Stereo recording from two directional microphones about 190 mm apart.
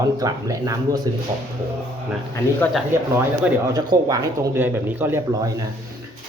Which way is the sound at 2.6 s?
10° left (ahead or behind).